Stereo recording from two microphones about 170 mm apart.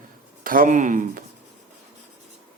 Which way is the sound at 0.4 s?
55° right (ahead or behind).